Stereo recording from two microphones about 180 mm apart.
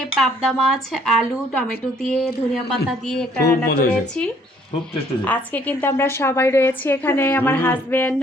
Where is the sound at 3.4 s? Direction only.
60° left (ahead or behind).